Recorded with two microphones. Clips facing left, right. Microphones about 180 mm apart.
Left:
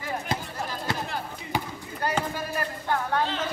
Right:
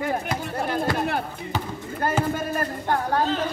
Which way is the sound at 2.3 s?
45° right (ahead or behind).